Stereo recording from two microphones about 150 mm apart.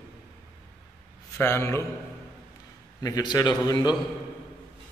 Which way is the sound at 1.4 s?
15° left (ahead or behind).